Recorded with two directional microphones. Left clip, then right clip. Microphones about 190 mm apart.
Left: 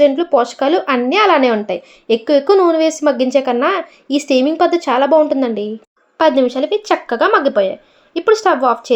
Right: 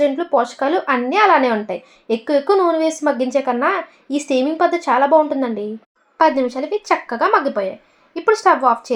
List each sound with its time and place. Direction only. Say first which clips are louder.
0.0 s speech: left 5 dB; 25° left (ahead or behind)